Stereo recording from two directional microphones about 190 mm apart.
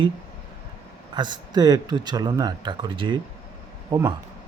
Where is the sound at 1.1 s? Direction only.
25° right (ahead or behind).